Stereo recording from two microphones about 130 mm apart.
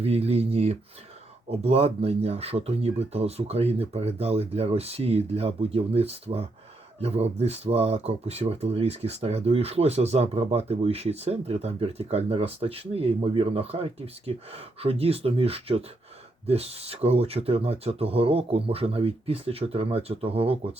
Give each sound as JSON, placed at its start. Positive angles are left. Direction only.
{"t": 0.0, "sound": "speech", "side_deg": -50}